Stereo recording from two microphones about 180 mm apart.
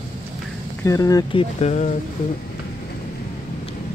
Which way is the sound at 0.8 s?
20° left (ahead or behind).